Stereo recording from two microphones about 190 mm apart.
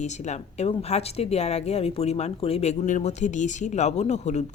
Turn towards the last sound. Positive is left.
turn(degrees=40)  # may be behind; listen again after turning